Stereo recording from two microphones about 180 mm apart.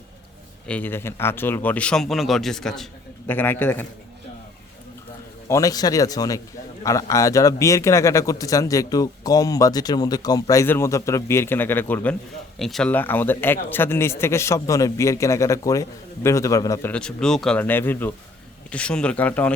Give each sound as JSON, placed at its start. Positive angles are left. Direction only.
{"t": 0.7, "sound": "a man's voice", "side_deg": 10}
{"t": 5.5, "sound": "a man's voice", "side_deg": 20}
{"t": 16.9, "sound": "a man's voice", "side_deg": 5}